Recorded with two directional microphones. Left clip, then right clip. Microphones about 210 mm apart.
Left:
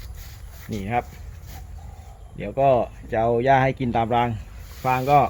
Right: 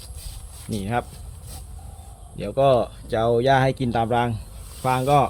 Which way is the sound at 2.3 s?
10° right (ahead or behind).